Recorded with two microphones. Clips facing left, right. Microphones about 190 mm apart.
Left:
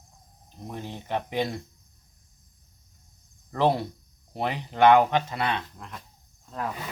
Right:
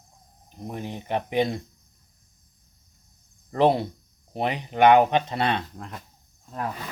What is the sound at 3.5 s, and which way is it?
Speech, 20° right (ahead or behind).